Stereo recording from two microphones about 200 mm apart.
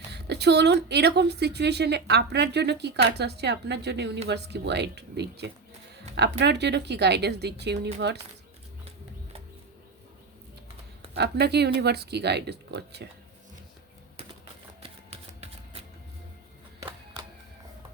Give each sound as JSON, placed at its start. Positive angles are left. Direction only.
{"t": 0.1, "sound": "speech", "side_deg": -55}
{"t": 11.1, "sound": "speech", "side_deg": -55}